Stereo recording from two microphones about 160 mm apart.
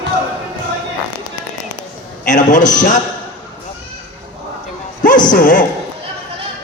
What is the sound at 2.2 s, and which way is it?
Speech, 50° left (ahead or behind).